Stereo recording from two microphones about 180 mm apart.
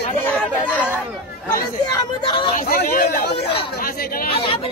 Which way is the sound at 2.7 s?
55° left (ahead or behind).